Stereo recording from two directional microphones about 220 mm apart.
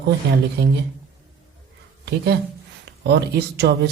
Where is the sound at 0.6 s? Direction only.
50° right (ahead or behind).